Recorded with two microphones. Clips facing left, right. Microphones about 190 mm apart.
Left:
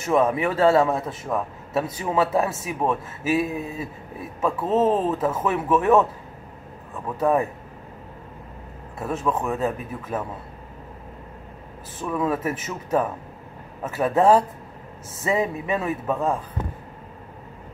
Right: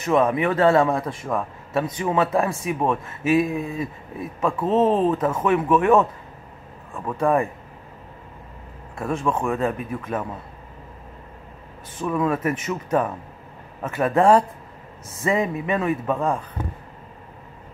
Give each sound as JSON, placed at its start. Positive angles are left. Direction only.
{"t": 0.0, "sound": "a man's voice", "side_deg": 5}
{"t": 7.2, "sound": "a man's voice", "side_deg": 5}
{"t": 8.9, "sound": "a man's voice", "side_deg": 5}
{"t": 12.0, "sound": "a man's voice", "side_deg": 5}